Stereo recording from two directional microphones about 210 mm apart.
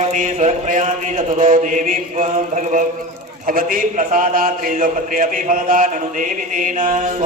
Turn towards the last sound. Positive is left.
turn(degrees=-40)  # may be behind; listen again after turning